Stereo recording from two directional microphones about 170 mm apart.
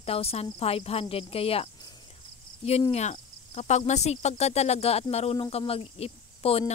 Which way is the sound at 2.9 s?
40° left (ahead or behind).